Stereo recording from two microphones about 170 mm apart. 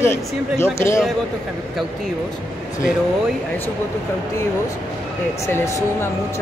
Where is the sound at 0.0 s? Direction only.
15° left (ahead or behind).